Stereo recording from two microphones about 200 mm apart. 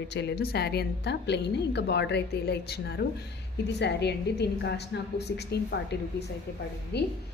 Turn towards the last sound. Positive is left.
turn(degrees=55)  # may be behind; listen again after turning